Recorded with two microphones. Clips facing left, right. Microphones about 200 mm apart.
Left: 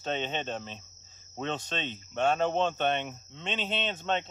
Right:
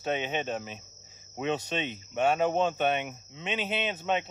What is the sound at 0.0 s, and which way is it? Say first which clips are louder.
Speech: right 2 dB; 10° right (ahead or behind).